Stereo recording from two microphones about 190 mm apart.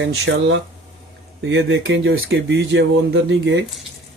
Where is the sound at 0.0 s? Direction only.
70° right (ahead or behind).